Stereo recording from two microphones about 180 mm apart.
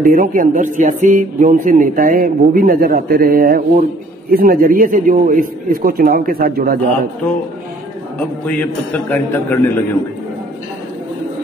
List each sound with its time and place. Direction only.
0.0 s speech: 50° right (ahead or behind)
8.2 s a man's voice: 10° left (ahead or behind)